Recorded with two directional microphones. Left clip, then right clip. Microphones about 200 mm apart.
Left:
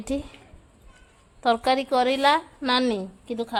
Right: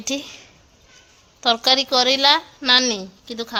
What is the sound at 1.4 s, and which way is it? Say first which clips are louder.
A woman's voice: right 4 dB; 5° left (ahead or behind).